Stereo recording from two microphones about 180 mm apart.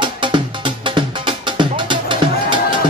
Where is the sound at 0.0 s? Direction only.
25° right (ahead or behind).